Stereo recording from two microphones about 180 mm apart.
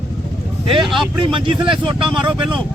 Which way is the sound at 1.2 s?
25° right (ahead or behind).